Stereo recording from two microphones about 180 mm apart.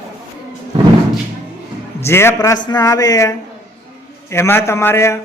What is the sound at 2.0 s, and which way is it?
A man's voice, 15° left (ahead or behind).